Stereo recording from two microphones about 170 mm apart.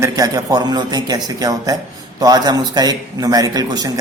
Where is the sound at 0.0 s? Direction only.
20° right (ahead or behind).